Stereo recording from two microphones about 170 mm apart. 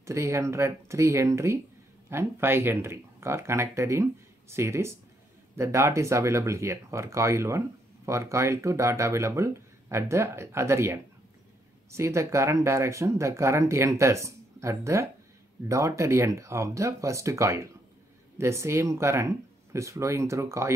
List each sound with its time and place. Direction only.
0.0 s speech: 15° right (ahead or behind)